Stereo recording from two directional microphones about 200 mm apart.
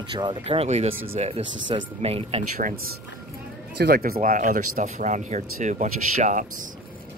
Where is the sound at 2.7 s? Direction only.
90° right.